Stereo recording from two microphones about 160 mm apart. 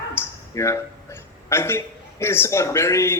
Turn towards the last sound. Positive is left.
turn(degrees=15)  # may be behind; listen again after turning